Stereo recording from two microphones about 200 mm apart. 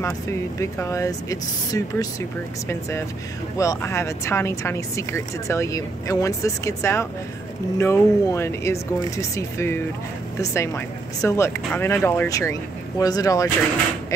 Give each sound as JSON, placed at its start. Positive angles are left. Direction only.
{"t": 0.6, "sound": "speech", "side_deg": 15}
{"t": 3.5, "sound": "speech", "side_deg": 15}